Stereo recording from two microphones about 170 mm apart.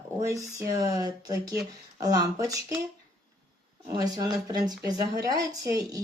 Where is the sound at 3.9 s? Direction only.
20° right (ahead or behind).